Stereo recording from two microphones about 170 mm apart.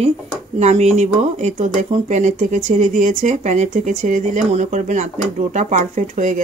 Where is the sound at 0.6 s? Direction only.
40° right (ahead or behind).